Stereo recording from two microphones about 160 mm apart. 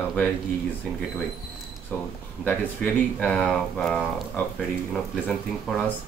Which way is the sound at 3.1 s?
10° left (ahead or behind).